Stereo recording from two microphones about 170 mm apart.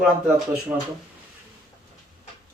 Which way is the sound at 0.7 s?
20° right (ahead or behind).